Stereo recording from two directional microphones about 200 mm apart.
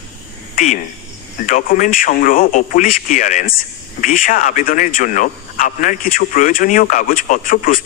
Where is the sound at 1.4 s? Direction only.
40° left (ahead or behind).